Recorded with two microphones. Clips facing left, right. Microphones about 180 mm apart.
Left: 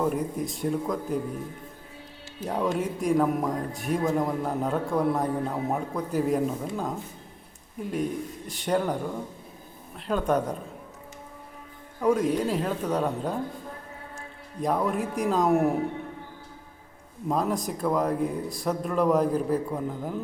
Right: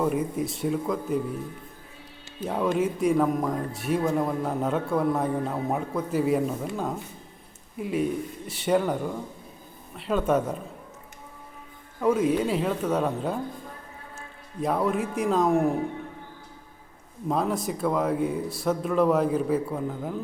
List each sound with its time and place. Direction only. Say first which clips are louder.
0.0 s speech: right 1 dB; centre (ahead or behind)
2.5 s speech: right 2 dB; centre (ahead or behind)
11.9 s speech: right 1 dB; 5° right (ahead or behind)
14.6 s speech: right 1 dB; centre (ahead or behind)
17.2 s speech: right 1 dB; centre (ahead or behind)